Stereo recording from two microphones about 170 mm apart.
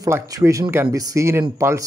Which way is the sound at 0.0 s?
20° right (ahead or behind).